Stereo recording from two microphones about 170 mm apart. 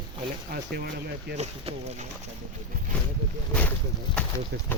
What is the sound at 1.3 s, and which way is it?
Speech, 40° right (ahead or behind).